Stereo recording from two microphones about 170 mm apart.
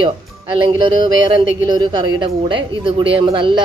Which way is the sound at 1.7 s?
25° right (ahead or behind).